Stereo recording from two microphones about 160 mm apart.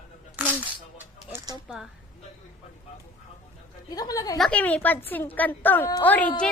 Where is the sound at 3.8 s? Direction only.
25° left (ahead or behind).